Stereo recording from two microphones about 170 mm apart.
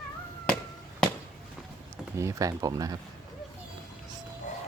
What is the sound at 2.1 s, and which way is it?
Speech, 20° right (ahead or behind).